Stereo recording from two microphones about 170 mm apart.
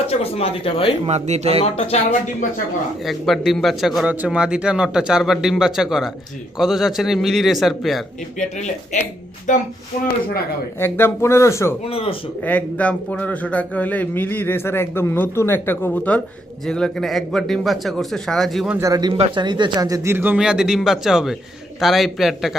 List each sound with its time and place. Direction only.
0.1 s speech: 35° left (ahead or behind)
1.0 s speech: 40° right (ahead or behind)
1.6 s speech: 35° left (ahead or behind)
3.0 s speech: centre (ahead or behind)
8.4 s speech: 45° left (ahead or behind)
10.8 s speech: 15° left (ahead or behind)
11.9 s speech: 35° left (ahead or behind)
12.4 s speech: 10° left (ahead or behind)
18.8 s speech: 20° right (ahead or behind)
19.1 s speech: 30° right (ahead or behind); by 22.5 s centre (ahead or behind)